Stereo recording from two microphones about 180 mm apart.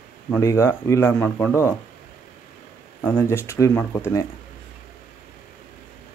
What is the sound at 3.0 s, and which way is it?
Speech, 10° left (ahead or behind).